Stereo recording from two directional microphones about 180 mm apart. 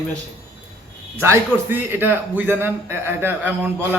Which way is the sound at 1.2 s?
15° right (ahead or behind).